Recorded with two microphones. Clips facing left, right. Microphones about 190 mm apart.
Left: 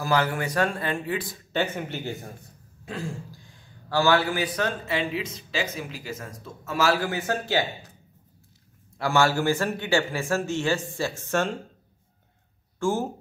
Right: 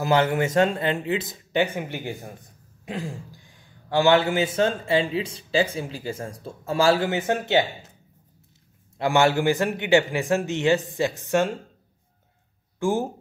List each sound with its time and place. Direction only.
0.0 s a man's voice: 25° right (ahead or behind)
2.8 s throat clearing: 20° right (ahead or behind)
3.9 s a man's voice: 20° right (ahead or behind)
8.9 s a man's voice: 20° right (ahead or behind)
12.7 s speech: 15° right (ahead or behind)